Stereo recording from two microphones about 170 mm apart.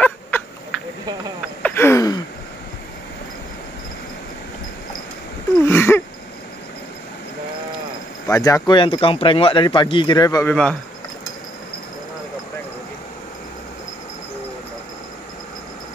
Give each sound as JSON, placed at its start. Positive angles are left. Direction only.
{"t": 0.0, "sound": "a sound", "side_deg": 10}
{"t": 1.6, "sound": "sigh", "side_deg": 10}
{"t": 5.7, "sound": "wheeze", "side_deg": 10}
{"t": 8.3, "sound": "speech", "side_deg": 20}
{"t": 10.4, "sound": "speech", "side_deg": 5}